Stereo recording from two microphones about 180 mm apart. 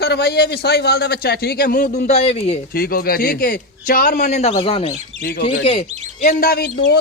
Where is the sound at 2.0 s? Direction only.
35° left (ahead or behind).